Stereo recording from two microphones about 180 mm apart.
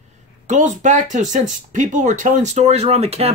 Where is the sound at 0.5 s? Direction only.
40° right (ahead or behind).